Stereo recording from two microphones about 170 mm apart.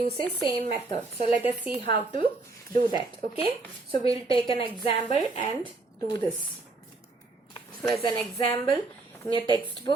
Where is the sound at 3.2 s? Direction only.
65° right (ahead or behind).